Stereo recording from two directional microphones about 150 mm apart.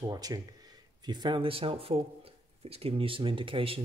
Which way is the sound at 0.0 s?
25° right (ahead or behind).